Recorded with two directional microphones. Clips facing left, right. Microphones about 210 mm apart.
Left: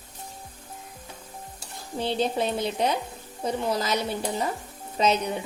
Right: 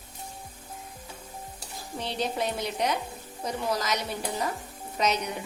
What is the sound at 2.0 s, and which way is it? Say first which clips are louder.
A woman's voice: left 5 dB; 30° left (ahead or behind).